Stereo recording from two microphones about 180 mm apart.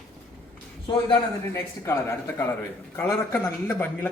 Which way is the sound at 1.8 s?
15° left (ahead or behind).